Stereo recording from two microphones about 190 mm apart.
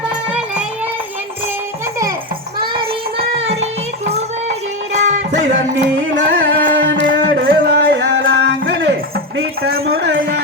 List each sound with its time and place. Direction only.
0.3 s music: 5° right (ahead or behind)
2.7 s a sound: 30° right (ahead or behind)
6.1 s music: 45° right (ahead or behind)
6.7 s music: 75° right (ahead or behind)
9.7 s speech: 55° right (ahead or behind)
10.1 s music: 85° right